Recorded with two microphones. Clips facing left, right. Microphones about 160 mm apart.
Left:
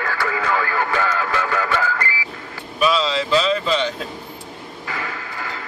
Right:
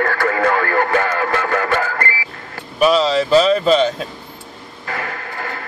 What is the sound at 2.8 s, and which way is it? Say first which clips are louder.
Speech: right 5 dB; 40° right (ahead or behind).